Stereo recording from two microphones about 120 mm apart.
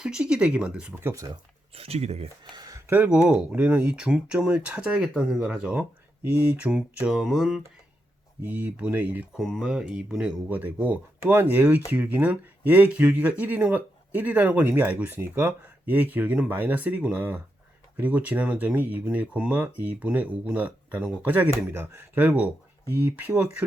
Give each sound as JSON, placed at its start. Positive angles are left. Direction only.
{"t": 0.0, "sound": "speech", "side_deg": -5}
{"t": 1.0, "sound": "speech", "side_deg": -25}
{"t": 1.7, "sound": "speech", "side_deg": -55}
{"t": 2.4, "sound": "speech", "side_deg": -35}
{"t": 8.4, "sound": "speech", "side_deg": -15}
{"t": 9.3, "sound": "speech", "side_deg": 0}